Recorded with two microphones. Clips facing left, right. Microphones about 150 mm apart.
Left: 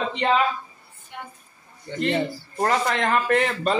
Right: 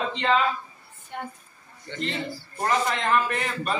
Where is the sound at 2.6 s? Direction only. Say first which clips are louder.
Left 2 dB; 65° left (ahead or behind).